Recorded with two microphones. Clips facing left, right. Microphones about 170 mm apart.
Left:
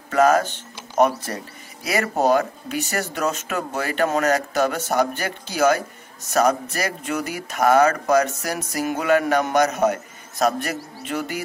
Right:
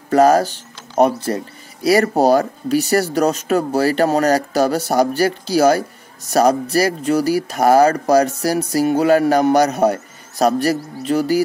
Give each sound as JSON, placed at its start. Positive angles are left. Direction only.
{"t": 0.1, "sound": "speech", "side_deg": -35}